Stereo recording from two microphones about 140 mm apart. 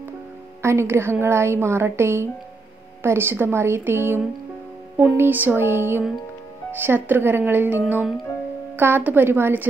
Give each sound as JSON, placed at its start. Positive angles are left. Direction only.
{"t": 0.6, "sound": "a woman's voice", "side_deg": -20}